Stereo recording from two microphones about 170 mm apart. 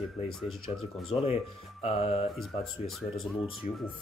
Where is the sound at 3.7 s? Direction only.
45° left (ahead or behind).